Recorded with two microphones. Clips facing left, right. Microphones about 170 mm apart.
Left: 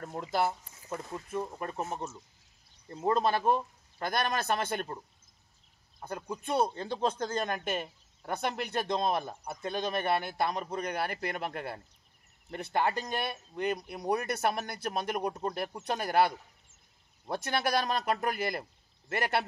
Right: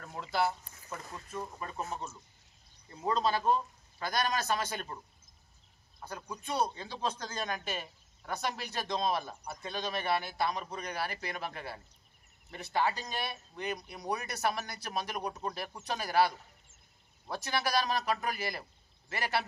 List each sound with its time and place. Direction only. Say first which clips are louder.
0.0 s speech: left 2 dB; 45° left (ahead or behind)
1.8 s speech: left 2 dB; 25° left (ahead or behind)
3.1 s speech: left 2 dB; 55° left (ahead or behind)
6.0 s speech: left 5 dB; 50° left (ahead or behind)